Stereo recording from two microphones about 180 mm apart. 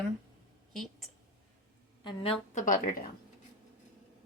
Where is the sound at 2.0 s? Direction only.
25° left (ahead or behind).